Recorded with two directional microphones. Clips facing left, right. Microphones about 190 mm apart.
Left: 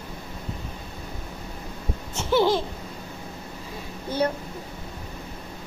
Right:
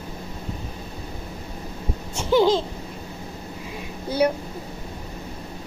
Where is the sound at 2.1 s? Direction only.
15° right (ahead or behind).